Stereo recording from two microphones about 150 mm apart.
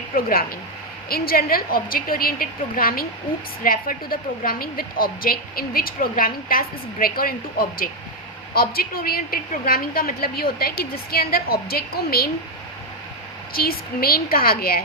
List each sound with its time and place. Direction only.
0.1 s speech: 70° left (ahead or behind)
1.1 s a woman's voice: 85° left
8.5 s a woman's voice: 90° left
13.5 s a woman's voice: 80° left